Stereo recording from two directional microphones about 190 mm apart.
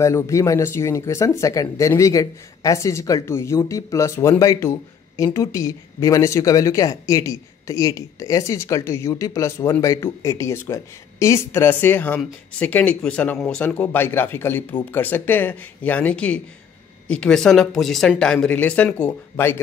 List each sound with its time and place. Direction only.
0.0 s speech: 15° left (ahead or behind)